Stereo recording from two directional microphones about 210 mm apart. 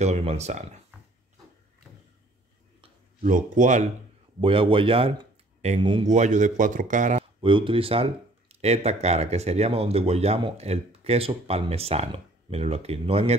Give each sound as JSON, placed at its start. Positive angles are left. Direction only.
{"t": 0.0, "sound": "speech", "side_deg": -30}
{"t": 2.8, "sound": "a sound", "side_deg": -35}
{"t": 4.4, "sound": "speech", "side_deg": -25}
{"t": 7.4, "sound": "speech", "side_deg": -25}